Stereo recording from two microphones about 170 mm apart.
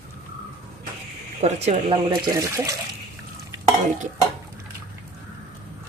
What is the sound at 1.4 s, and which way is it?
Speech, 35° right (ahead or behind).